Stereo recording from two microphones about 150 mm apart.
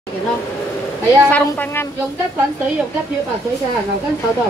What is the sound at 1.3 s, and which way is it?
Speech, 15° left (ahead or behind).